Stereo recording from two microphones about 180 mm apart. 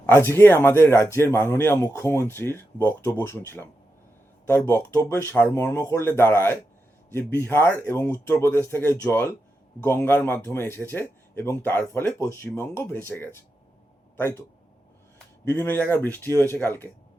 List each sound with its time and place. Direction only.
0.0 s speech: 10° left (ahead or behind)
15.4 s speech: 15° left (ahead or behind)